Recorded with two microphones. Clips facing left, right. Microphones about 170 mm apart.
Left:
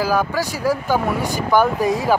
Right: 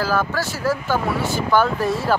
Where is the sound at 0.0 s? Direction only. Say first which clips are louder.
Left 2 dB; 10° left (ahead or behind).